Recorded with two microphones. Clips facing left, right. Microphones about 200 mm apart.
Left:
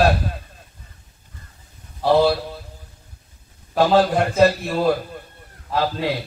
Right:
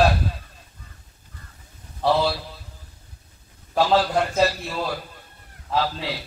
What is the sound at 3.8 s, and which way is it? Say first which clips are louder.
A man's voice: left 4 dB; 50° left (ahead or behind).